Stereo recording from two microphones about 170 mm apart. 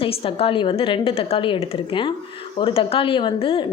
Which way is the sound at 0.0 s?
35° left (ahead or behind).